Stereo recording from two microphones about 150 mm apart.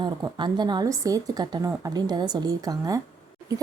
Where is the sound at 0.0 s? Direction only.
30° right (ahead or behind).